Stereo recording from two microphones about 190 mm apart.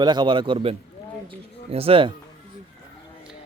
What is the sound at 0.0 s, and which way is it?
A man's voice, 25° right (ahead or behind).